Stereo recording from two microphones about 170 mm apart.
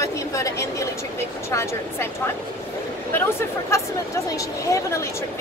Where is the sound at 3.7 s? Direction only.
15° left (ahead or behind).